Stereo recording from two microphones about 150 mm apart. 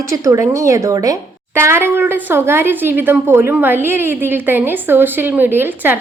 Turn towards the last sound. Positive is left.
turn(degrees=-15)  # may be behind; listen again after turning